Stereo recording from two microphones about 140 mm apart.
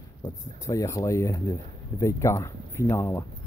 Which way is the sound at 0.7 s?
25° left (ahead or behind).